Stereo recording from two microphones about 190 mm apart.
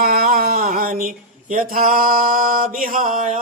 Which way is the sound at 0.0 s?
50° right (ahead or behind).